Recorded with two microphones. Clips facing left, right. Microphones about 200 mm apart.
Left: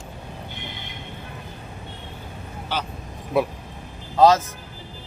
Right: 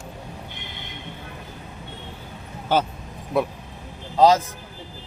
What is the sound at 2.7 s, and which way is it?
Speech, 50° right (ahead or behind).